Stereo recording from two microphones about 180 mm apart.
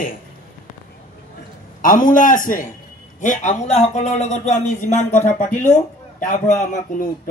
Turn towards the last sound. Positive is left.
turn(degrees=45)  # may be behind; listen again after turning